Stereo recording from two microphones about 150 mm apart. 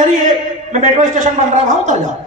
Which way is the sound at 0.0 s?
55° right (ahead or behind).